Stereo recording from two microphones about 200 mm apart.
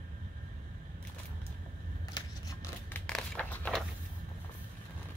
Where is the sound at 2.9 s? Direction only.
5° left (ahead or behind).